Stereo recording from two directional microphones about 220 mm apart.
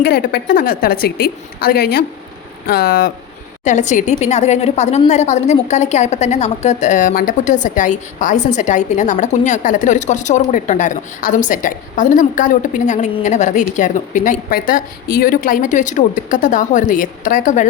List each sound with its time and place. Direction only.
0.0 s a woman's voice: 45° left (ahead or behind)
3.6 s a woman's voice: 35° left (ahead or behind)